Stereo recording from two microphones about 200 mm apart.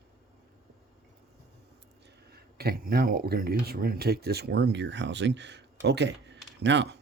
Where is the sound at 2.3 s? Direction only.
50° right (ahead or behind).